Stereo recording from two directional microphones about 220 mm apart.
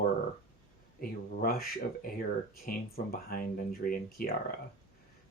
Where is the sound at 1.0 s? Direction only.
40° left (ahead or behind).